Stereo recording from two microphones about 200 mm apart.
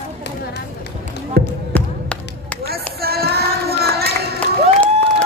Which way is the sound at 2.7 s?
50° right (ahead or behind).